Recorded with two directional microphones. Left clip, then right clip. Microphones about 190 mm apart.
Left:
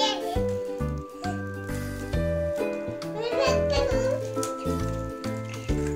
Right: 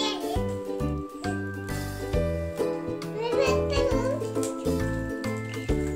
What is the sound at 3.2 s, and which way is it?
Music, 10° right (ahead or behind).